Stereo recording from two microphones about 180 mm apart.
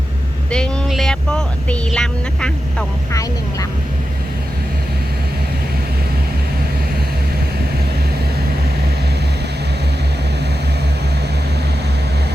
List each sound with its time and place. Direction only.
0.5 s speech: centre (ahead or behind)
3.1 s speech: 20° left (ahead or behind)